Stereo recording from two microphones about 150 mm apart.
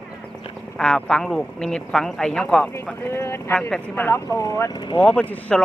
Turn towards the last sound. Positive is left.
turn(degrees=10)  # may be behind; listen again after turning